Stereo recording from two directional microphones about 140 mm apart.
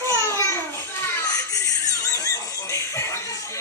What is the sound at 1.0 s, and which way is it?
Children playing, 25° left (ahead or behind).